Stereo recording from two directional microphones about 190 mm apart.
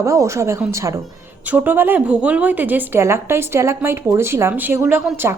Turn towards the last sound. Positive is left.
turn(degrees=-10)  # may be behind; listen again after turning